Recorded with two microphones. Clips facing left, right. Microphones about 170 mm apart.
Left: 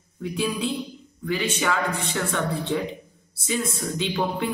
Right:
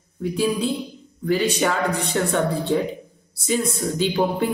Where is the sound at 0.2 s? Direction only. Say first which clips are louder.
Right 4 dB; 40° right (ahead or behind).